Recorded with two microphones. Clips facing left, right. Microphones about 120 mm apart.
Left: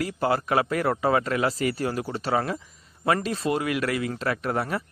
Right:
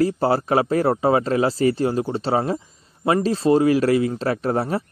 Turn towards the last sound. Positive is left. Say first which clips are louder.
# right 5 dB
turn(degrees=-30)  # may be behind; listen again after turning